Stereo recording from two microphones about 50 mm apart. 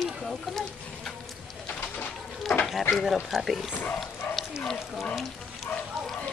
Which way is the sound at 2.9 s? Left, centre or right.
Centre.